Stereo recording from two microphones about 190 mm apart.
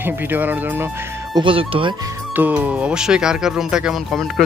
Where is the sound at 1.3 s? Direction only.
25° right (ahead or behind).